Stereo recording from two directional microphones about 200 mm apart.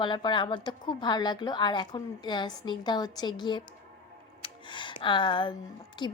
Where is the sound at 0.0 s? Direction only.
25° left (ahead or behind).